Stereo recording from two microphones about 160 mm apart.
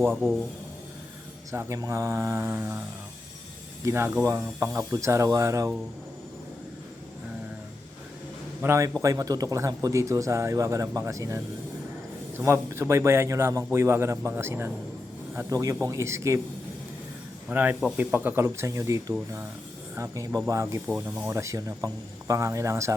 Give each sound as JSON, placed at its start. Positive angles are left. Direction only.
{"t": 0.2, "sound": "speech", "side_deg": -5}
{"t": 1.5, "sound": "speech", "side_deg": -20}
{"t": 3.8, "sound": "speech", "side_deg": -15}
{"t": 8.6, "sound": "speech", "side_deg": -15}
{"t": 17.5, "sound": "speech", "side_deg": -10}
{"t": 20.8, "sound": "speech", "side_deg": -10}